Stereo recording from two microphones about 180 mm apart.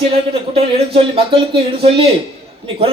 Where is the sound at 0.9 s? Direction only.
30° right (ahead or behind).